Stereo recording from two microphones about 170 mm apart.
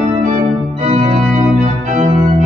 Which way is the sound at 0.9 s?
45° right (ahead or behind).